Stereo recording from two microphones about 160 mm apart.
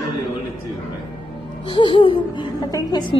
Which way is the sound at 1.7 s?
30° left (ahead or behind).